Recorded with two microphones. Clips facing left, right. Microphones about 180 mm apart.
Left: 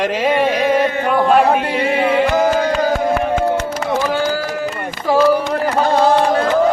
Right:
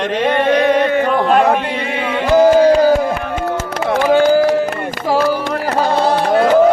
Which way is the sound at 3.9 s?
60° right (ahead or behind).